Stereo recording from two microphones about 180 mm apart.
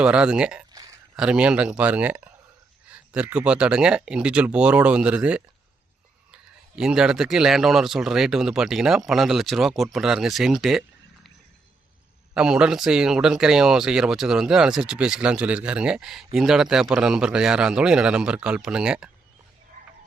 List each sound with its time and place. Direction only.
0.0 s speech: 5° right (ahead or behind)
12.3 s speech: 5° right (ahead or behind)
19.7 s a sound: 45° right (ahead or behind)